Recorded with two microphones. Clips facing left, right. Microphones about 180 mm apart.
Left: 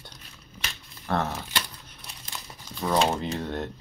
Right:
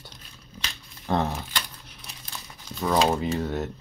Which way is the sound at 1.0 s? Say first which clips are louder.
Right 2 dB; 15° right (ahead or behind).